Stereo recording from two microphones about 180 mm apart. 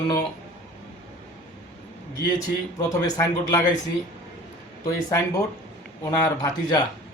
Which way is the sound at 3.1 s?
20° left (ahead or behind).